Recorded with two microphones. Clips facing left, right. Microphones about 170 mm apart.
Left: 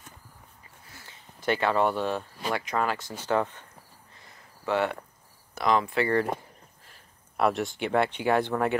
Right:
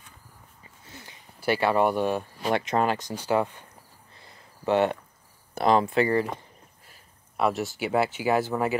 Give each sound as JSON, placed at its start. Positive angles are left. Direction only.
{"t": 0.8, "sound": "a sound", "side_deg": -20}
{"t": 2.5, "sound": "speech", "side_deg": -25}
{"t": 4.6, "sound": "speech", "side_deg": -20}
{"t": 5.6, "sound": "speech", "side_deg": -30}
{"t": 7.3, "sound": "speech", "side_deg": 0}